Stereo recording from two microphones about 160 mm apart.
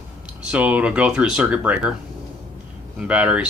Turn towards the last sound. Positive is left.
turn(degrees=-10)  # may be behind; listen again after turning